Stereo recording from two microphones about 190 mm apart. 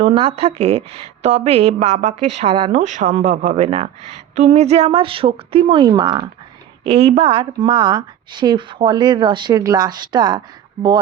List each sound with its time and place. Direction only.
0.0 s a woman's voice: 30° right (ahead or behind)